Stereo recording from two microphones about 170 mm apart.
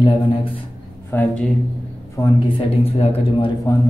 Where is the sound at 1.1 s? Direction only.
10° left (ahead or behind).